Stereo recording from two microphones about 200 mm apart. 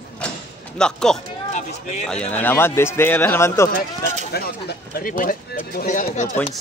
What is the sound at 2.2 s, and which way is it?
Speech, 10° left (ahead or behind).